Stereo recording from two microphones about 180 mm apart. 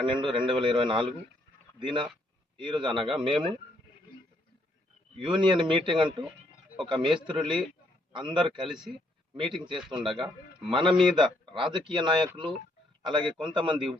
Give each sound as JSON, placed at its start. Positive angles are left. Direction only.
{"t": 0.0, "sound": "speech", "side_deg": -25}
{"t": 5.3, "sound": "a man's voice", "side_deg": -25}